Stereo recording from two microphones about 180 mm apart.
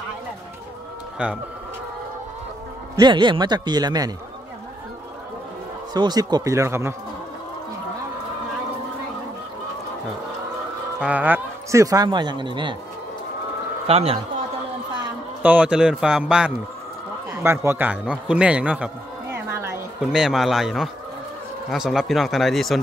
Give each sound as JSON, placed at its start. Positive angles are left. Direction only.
{"t": 1.2, "sound": "a man's voice", "side_deg": -5}
{"t": 3.0, "sound": "a man's voice", "side_deg": -25}
{"t": 5.9, "sound": "a man's voice", "side_deg": -25}
{"t": 11.0, "sound": "a man's voice", "side_deg": -10}
{"t": 13.8, "sound": "a man's voice", "side_deg": -35}
{"t": 15.4, "sound": "a man's voice", "side_deg": -5}
{"t": 19.3, "sound": "a sound", "side_deg": -15}
{"t": 20.0, "sound": "a man's voice", "side_deg": -5}